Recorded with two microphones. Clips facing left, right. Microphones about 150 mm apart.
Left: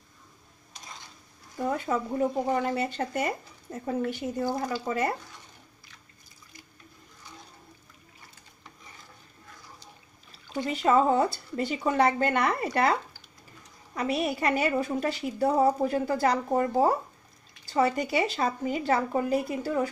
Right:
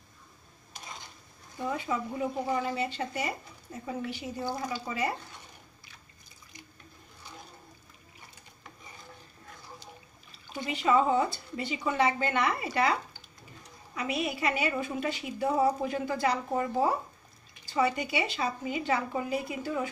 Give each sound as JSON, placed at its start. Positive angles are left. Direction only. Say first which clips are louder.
{"t": 1.6, "sound": "speech", "louder": "left 4 dB", "side_deg": 45}
{"t": 10.6, "sound": "speech", "louder": "left 3 dB", "side_deg": 40}
{"t": 13.9, "sound": "a woman's voice", "louder": "left 4 dB", "side_deg": 35}